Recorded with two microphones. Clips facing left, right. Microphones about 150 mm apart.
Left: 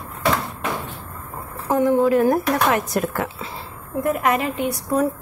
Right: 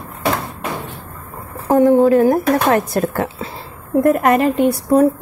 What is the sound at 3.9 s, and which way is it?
Speech, 45° right (ahead or behind).